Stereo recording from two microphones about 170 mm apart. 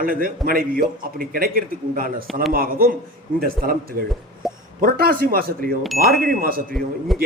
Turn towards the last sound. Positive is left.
turn(degrees=0)  # may be behind; listen again after turning